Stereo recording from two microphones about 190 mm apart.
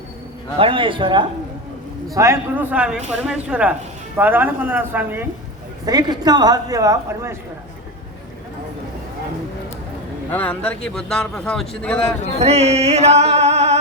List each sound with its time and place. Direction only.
0.6 s speech: 25° right (ahead or behind)
2.1 s a woman's voice: 15° right (ahead or behind)
5.8 s speech: 20° right (ahead or behind)
10.3 s speech: 5° left (ahead or behind)
12.4 s music: 35° right (ahead or behind)